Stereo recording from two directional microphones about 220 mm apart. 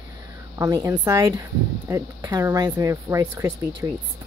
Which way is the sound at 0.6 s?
15° right (ahead or behind).